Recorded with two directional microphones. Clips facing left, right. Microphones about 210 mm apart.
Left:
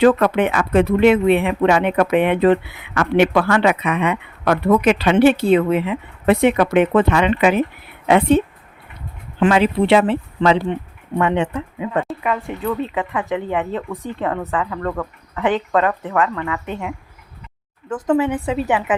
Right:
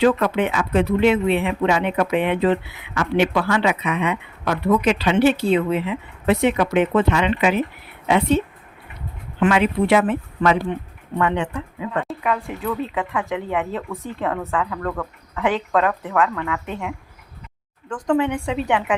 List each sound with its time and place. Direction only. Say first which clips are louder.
0.0 s speech: left 4 dB; 55° left (ahead or behind)
9.4 s speech: left 3 dB; 30° left (ahead or behind)
12.0 s a woman's voice: left 1 dB; centre (ahead or behind)
18.0 s a woman's voice: left 2 dB; 5° left (ahead or behind)